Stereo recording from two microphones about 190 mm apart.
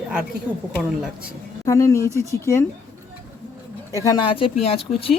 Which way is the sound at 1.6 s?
15° left (ahead or behind).